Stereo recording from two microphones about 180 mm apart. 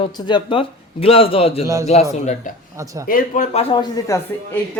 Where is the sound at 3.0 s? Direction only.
50° left (ahead or behind).